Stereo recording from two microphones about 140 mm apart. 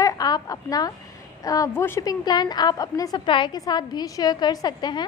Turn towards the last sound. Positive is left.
turn(degrees=30)  # may be behind; listen again after turning